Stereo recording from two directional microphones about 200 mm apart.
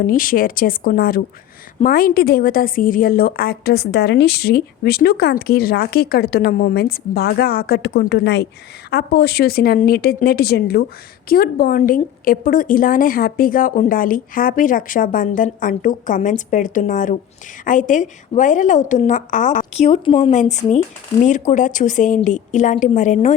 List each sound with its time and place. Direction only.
0.0 s a woman's voice: 45° left (ahead or behind); by 20.3 s 25° left (ahead or behind)
20.3 s a woman's voice: 35° left (ahead or behind)